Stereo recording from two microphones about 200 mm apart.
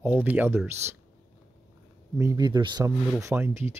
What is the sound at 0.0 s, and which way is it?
Speech, 10° right (ahead or behind).